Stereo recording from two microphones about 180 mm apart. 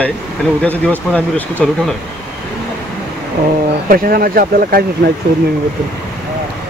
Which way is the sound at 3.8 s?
55° right (ahead or behind).